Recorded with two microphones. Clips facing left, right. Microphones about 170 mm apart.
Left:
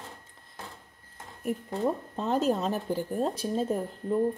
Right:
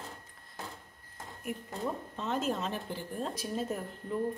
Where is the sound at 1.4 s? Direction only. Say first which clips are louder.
Left 8 dB; 35° left (ahead or behind).